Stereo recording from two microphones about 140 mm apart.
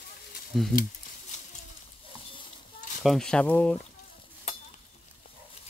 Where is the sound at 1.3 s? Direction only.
60° left (ahead or behind).